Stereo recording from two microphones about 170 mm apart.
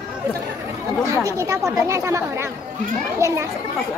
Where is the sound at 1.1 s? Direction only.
15° right (ahead or behind).